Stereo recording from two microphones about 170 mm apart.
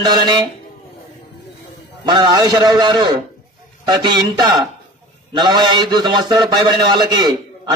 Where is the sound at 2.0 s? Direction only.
25° right (ahead or behind).